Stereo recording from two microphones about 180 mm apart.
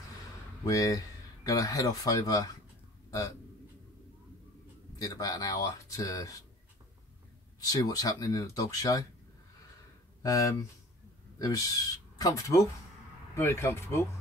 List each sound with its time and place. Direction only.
0.7 s speech: 20° left (ahead or behind)
4.9 s speech: 20° left (ahead or behind)
7.6 s speech: 20° left (ahead or behind)
10.2 s speech: 20° left (ahead or behind)